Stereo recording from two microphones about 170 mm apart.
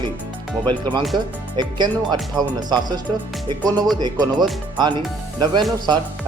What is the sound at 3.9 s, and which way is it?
Speech, 25° right (ahead or behind).